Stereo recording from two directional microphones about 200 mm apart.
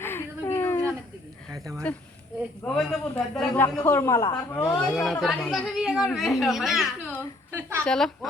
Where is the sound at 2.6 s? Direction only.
Centre (ahead or behind).